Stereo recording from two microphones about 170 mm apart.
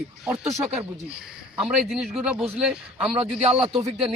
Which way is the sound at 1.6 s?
Centre (ahead or behind).